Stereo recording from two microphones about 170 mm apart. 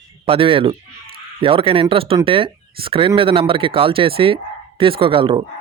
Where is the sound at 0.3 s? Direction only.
30° right (ahead or behind).